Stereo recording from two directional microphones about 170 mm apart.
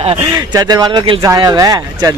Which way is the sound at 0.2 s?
20° right (ahead or behind).